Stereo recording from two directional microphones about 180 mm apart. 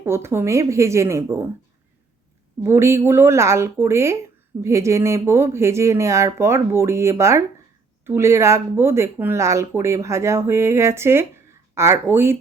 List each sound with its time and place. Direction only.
0.0 s speech: 15° right (ahead or behind)
2.6 s speech: 15° right (ahead or behind)